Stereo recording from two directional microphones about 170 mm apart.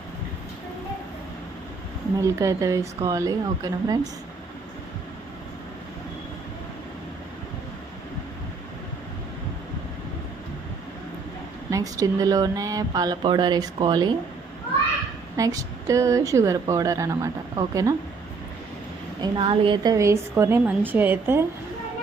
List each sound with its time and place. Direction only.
2.2 s speech: 20° right (ahead or behind)
11.7 s speech: 20° right (ahead or behind)
15.4 s speech: 20° right (ahead or behind)
19.2 s a woman's voice: 30° right (ahead or behind); by 21.4 s 10° right (ahead or behind)